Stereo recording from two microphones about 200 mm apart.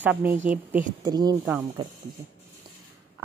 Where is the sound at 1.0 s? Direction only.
20° right (ahead or behind).